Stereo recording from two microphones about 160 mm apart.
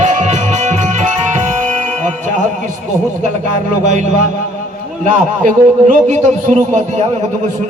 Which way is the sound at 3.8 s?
50° right (ahead or behind).